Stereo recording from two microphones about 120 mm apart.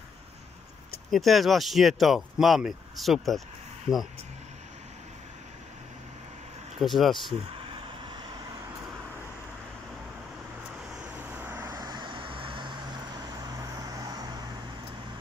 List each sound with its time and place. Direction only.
1.1 s speech: centre (ahead or behind)
6.8 s speech: centre (ahead or behind)
11.1 s vehicle: 15° right (ahead or behind)
11.7 s vehicle: 30° right (ahead or behind)